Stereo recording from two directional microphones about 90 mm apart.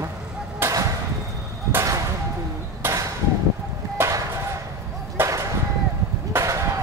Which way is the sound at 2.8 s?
25° right (ahead or behind).